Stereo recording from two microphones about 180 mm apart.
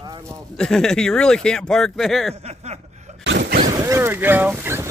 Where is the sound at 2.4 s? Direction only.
35° right (ahead or behind).